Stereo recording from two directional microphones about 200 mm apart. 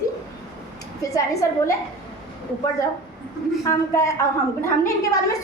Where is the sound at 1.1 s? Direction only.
15° left (ahead or behind).